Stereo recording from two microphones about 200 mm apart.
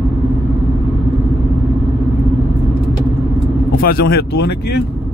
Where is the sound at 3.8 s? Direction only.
50° left (ahead or behind).